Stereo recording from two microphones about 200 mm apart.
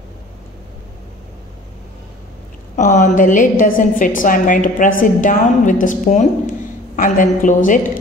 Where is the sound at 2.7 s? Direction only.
40° left (ahead or behind).